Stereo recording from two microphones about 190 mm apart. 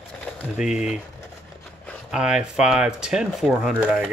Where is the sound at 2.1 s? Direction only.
5° right (ahead or behind).